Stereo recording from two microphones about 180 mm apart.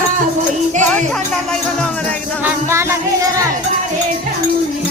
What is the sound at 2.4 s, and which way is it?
Music, 15° right (ahead or behind).